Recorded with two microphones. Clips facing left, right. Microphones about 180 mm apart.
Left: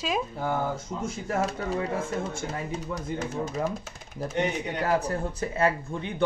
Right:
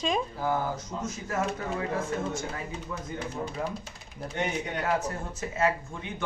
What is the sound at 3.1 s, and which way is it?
Speech, 45° left (ahead or behind).